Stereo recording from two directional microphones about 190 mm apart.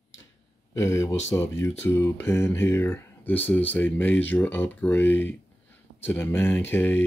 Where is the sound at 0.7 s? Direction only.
15° left (ahead or behind).